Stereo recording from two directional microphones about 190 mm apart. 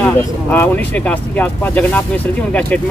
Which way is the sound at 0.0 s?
5° left (ahead or behind).